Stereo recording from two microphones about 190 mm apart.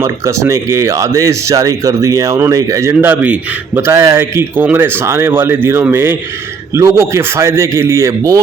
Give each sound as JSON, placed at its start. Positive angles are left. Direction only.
{"t": 0.0, "sound": "speech", "side_deg": -15}